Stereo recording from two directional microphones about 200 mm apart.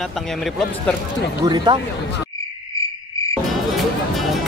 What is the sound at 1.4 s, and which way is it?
Speech, 20° right (ahead or behind).